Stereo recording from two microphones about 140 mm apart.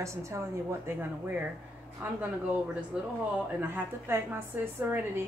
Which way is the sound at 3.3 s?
15° right (ahead or behind).